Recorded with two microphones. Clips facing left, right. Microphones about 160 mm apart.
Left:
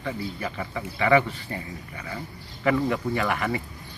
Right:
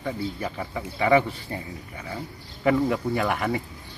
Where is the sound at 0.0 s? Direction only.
10° right (ahead or behind).